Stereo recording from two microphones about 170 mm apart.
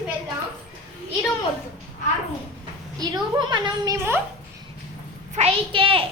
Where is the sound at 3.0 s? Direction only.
25° right (ahead or behind).